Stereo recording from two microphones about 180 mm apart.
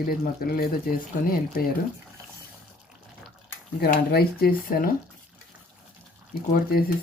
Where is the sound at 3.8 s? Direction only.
60° left (ahead or behind).